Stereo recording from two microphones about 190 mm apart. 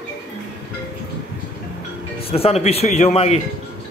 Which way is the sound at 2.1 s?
30° left (ahead or behind).